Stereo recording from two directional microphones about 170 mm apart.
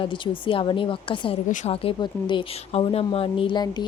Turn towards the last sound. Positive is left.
turn(degrees=30)  # may be behind; listen again after turning